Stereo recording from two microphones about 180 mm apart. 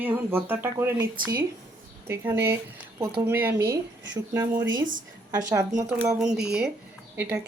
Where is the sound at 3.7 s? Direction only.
85° right.